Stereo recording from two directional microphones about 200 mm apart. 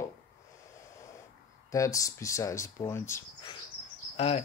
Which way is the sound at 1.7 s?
15° left (ahead or behind).